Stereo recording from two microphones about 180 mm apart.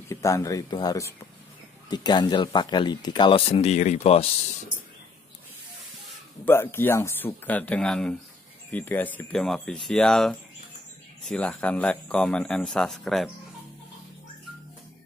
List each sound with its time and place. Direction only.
0.1 s speech: 15° left (ahead or behind); by 4.3 s 35° left (ahead or behind)
6.4 s speech: 10° left (ahead or behind)